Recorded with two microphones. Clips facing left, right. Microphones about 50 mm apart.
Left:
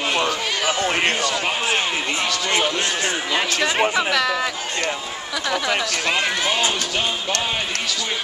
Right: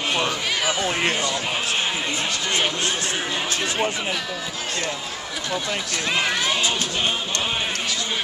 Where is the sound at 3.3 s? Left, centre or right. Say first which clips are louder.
Left 4 dB; left.